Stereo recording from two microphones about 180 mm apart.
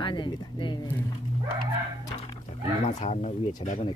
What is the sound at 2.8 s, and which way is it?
Speech, 40° left (ahead or behind).